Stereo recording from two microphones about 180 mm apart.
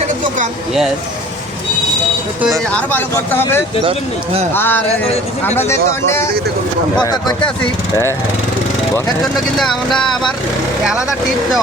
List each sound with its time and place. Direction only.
2.7 s speech: 10° left (ahead or behind)
9.6 s speech: centre (ahead or behind)